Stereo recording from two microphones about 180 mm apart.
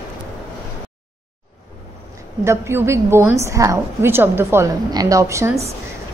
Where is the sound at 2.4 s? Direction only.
15° right (ahead or behind).